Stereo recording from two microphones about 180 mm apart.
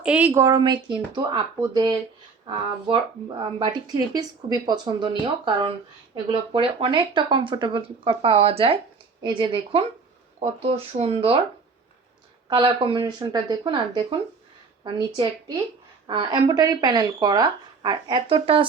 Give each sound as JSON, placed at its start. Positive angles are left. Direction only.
{"t": 0.0, "sound": "speech", "side_deg": -5}
{"t": 12.5, "sound": "speech", "side_deg": -30}